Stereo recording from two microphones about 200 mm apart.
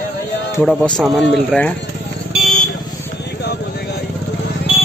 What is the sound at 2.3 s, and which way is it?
Vehicle, centre (ahead or behind).